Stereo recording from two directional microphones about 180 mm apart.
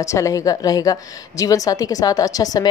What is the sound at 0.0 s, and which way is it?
A woman's voice, 15° left (ahead or behind).